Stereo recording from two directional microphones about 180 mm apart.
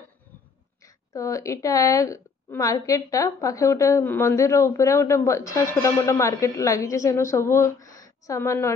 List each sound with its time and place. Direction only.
0.8 s a woman's voice: 20° left (ahead or behind)